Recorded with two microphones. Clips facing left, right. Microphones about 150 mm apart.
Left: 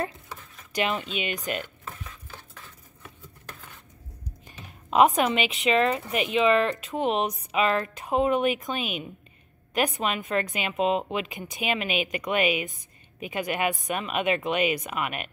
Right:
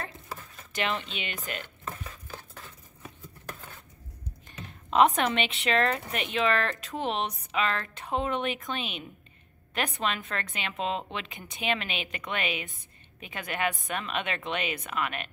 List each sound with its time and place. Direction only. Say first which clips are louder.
0.7 s speech: left 4 dB; 15° left (ahead or behind)
4.5 s speech: left 2 dB; 10° left (ahead or behind)